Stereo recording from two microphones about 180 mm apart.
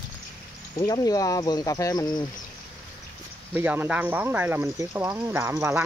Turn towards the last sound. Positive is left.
turn(degrees=-15)  # may be behind; listen again after turning